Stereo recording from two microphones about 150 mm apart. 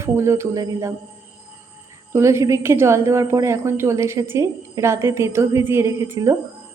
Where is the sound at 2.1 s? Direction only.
20° right (ahead or behind).